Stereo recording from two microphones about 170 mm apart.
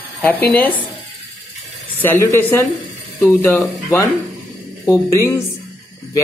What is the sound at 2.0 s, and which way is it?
Speech, 15° left (ahead or behind).